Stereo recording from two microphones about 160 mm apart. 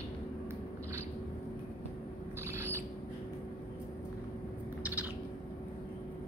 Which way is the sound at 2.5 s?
15° right (ahead or behind).